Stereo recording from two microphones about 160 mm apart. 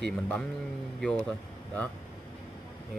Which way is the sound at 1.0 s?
5° left (ahead or behind).